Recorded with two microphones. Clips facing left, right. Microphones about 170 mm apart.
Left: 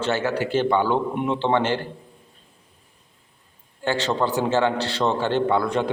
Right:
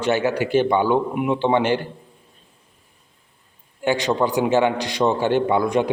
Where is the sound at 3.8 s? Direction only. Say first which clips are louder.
Right 3 dB; 15° right (ahead or behind).